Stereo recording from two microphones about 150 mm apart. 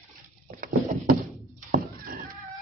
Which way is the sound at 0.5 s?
65° right (ahead or behind).